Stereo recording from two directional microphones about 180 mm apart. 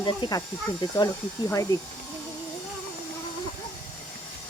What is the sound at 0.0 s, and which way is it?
Speech, 25° left (ahead or behind).